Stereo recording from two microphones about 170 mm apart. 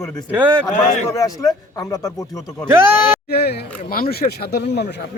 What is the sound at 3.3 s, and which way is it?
Speech, 70° left (ahead or behind).